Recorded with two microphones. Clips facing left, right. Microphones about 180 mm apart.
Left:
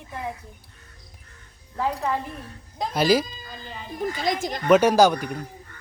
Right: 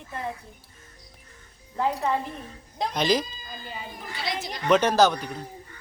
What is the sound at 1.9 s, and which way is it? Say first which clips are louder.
A woman's voice: even; centre (ahead or behind).